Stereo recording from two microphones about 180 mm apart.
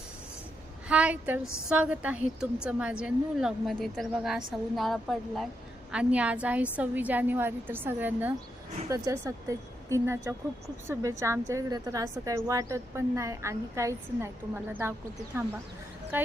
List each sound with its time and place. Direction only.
0.9 s a woman's voice: 5° right (ahead or behind)
16.1 s a woman's voice: 10° right (ahead or behind)